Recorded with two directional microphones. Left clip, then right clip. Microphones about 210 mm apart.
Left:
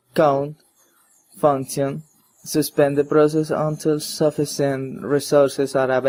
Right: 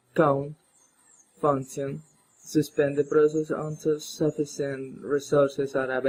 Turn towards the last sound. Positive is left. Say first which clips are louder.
# left 8 dB
turn(degrees=40)  # may be behind; listen again after turning